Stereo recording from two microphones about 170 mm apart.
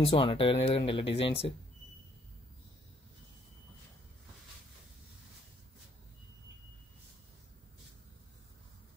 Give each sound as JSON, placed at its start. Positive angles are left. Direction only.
{"t": 0.0, "sound": "speech", "side_deg": 35}